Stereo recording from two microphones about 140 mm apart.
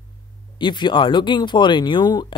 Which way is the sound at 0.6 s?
35° left (ahead or behind).